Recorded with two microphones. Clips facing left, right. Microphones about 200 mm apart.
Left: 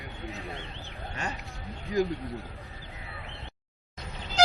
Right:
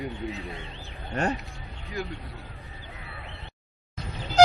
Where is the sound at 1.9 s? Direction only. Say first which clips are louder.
Left 7 dB; 40° left (ahead or behind).